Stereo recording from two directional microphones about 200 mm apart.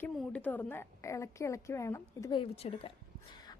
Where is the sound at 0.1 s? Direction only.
5° left (ahead or behind).